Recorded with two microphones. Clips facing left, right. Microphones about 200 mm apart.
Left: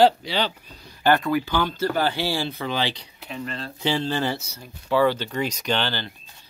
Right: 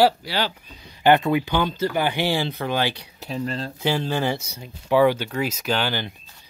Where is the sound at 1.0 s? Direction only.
20° right (ahead or behind).